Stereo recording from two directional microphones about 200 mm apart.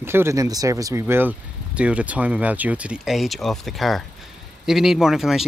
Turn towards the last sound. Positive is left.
turn(degrees=0)  # may be behind; listen again after turning